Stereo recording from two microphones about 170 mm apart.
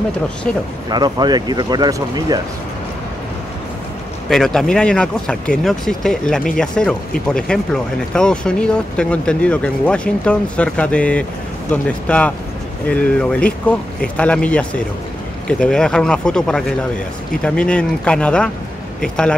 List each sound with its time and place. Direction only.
0.8 s speech: 25° right (ahead or behind)
4.3 s speech: 5° left (ahead or behind)